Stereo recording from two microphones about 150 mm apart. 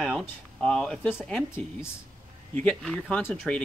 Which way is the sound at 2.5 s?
5° left (ahead or behind).